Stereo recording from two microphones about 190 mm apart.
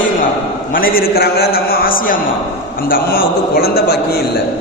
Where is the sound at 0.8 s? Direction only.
50° left (ahead or behind).